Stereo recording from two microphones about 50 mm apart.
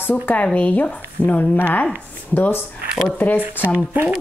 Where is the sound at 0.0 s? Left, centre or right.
Left.